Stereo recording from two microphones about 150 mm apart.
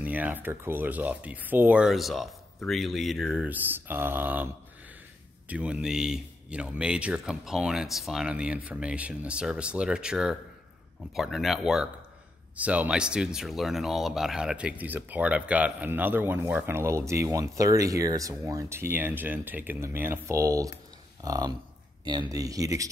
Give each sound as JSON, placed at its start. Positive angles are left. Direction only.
{"t": 0.0, "sound": "speech", "side_deg": -10}
{"t": 3.3, "sound": "speech", "side_deg": -10}
{"t": 5.5, "sound": "speech", "side_deg": -10}